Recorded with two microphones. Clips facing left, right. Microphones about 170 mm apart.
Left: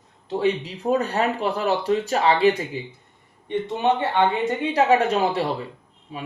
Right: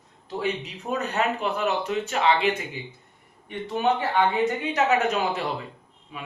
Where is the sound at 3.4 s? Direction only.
20° left (ahead or behind).